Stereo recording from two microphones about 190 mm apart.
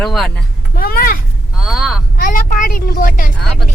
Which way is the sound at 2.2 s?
45° left (ahead or behind).